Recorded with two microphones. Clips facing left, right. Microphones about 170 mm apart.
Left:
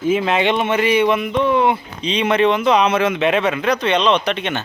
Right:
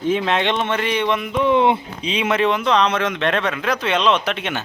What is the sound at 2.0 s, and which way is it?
A man's voice, 5° right (ahead or behind).